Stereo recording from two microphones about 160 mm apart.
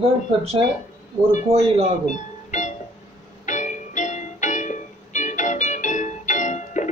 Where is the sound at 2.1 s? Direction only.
50° left (ahead or behind).